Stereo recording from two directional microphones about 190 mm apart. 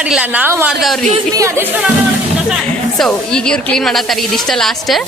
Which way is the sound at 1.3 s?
15° right (ahead or behind).